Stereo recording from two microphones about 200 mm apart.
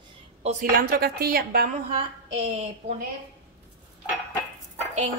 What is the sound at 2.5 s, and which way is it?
Speech, 30° right (ahead or behind).